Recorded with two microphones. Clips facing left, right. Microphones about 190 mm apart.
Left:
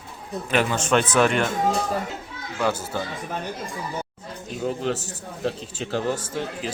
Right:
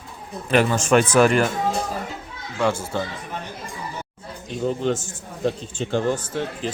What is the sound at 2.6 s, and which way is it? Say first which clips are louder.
Speech: right 2 dB; 25° right (ahead or behind).